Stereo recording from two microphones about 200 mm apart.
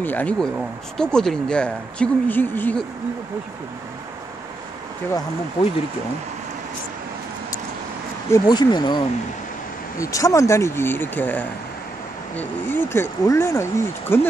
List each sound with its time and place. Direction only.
0.0 s speech: 10° left (ahead or behind)
8.3 s speech: 20° left (ahead or behind)